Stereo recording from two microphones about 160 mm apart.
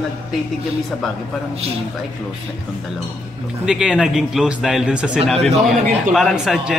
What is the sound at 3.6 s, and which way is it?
A man's voice, 5° right (ahead or behind).